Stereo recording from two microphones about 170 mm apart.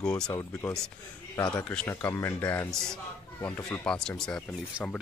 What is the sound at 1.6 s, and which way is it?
Speech, 5° left (ahead or behind).